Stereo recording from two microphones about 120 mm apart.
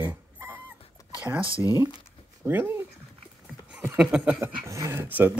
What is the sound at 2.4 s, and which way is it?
Speech, 20° right (ahead or behind).